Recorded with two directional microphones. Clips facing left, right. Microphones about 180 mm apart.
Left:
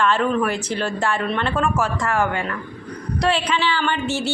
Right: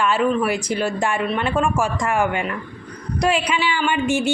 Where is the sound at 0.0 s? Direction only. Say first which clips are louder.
Even; 10° right (ahead or behind).